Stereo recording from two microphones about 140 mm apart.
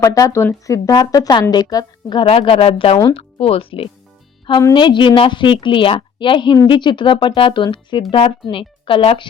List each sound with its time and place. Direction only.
0.0 s speech: 25° left (ahead or behind)
2.2 s a woman's voice: 45° left (ahead or behind)